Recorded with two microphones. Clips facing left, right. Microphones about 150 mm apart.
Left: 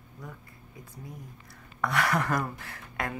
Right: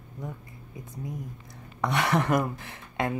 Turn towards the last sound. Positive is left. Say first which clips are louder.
# right 5 dB
turn(degrees=-25)  # may be behind; listen again after turning